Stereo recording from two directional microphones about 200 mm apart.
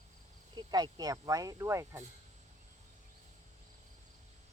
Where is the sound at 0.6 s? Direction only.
20° right (ahead or behind).